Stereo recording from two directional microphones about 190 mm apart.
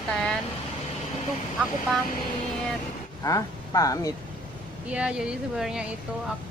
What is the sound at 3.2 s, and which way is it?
Speech, 20° left (ahead or behind).